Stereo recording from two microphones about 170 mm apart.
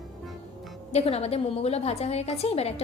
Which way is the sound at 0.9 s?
35° left (ahead or behind).